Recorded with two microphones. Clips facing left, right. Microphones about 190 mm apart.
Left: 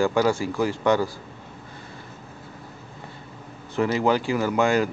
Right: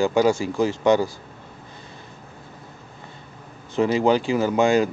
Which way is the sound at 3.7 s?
20° right (ahead or behind).